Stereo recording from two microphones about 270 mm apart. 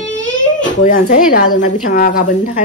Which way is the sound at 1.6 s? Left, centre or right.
Left.